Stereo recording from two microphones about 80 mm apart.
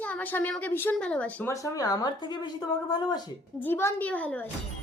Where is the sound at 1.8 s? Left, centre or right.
Left.